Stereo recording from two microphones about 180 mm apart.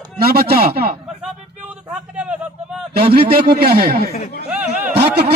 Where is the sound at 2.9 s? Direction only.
60° right (ahead or behind).